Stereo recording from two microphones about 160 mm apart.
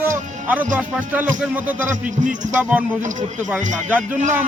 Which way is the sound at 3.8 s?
10° right (ahead or behind).